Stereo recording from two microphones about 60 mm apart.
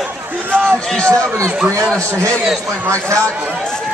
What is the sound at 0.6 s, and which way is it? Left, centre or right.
Speech, centre.